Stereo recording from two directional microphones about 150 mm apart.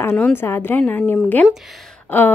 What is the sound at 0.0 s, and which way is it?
A woman's voice, 10° left (ahead or behind).